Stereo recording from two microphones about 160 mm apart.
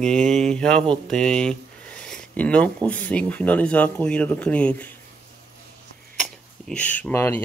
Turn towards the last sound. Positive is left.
turn(degrees=15)  # may be behind; listen again after turning